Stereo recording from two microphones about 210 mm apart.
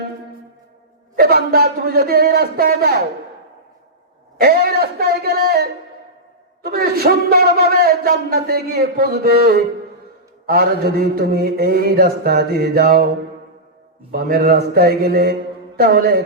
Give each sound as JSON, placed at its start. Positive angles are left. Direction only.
{"t": 1.1, "sound": "a man's voice", "side_deg": -45}
{"t": 4.4, "sound": "a man's voice", "side_deg": -45}
{"t": 14.1, "sound": "a man's voice", "side_deg": -45}